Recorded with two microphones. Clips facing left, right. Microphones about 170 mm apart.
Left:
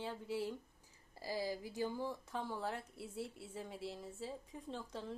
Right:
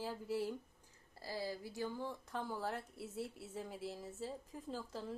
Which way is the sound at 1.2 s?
15° left (ahead or behind).